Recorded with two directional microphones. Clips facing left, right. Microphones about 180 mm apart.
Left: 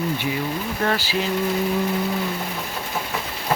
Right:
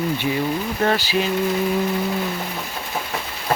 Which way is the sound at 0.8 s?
20° right (ahead or behind).